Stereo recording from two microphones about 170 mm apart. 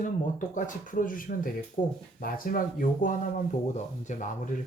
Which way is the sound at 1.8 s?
45° left (ahead or behind).